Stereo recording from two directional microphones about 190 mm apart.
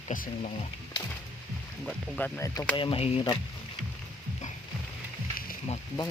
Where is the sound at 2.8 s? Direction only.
30° left (ahead or behind).